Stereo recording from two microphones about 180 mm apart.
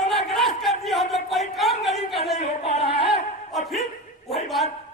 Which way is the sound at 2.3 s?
35° left (ahead or behind).